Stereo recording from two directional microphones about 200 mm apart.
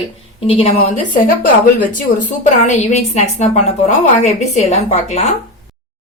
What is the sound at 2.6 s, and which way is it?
Speech, 35° left (ahead or behind).